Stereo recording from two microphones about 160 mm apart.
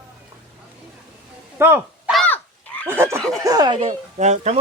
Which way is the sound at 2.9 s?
15° right (ahead or behind).